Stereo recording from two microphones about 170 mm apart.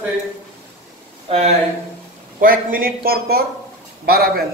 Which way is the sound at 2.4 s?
55° right (ahead or behind).